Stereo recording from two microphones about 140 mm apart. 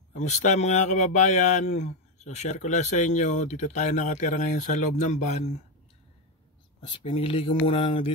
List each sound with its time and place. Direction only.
0.2 s speech: 60° left (ahead or behind)
6.8 s speech: 35° left (ahead or behind)